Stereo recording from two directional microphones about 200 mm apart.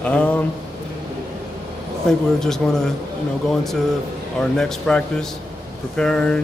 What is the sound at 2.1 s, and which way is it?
Speech, centre (ahead or behind).